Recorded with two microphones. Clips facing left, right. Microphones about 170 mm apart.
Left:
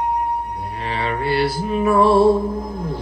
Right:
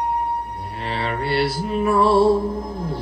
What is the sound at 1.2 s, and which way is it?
Music, 50° left (ahead or behind).